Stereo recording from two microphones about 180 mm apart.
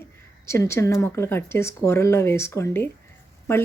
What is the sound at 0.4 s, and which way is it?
Speech, 15° left (ahead or behind).